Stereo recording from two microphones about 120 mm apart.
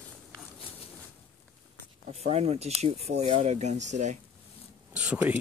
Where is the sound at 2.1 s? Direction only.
60° right (ahead or behind); by 4.2 s 80° right.